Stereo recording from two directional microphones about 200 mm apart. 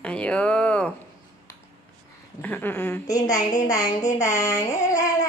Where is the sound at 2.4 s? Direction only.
10° left (ahead or behind).